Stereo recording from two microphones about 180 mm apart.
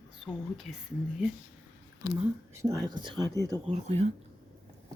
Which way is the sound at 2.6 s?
20° right (ahead or behind).